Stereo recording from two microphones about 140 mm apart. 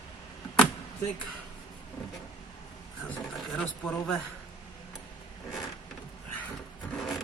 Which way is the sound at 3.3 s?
Centre (ahead or behind).